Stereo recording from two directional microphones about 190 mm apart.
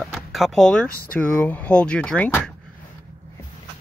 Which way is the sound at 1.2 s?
10° left (ahead or behind).